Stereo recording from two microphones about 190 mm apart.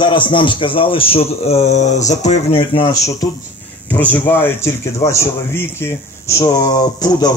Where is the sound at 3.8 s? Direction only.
5° left (ahead or behind).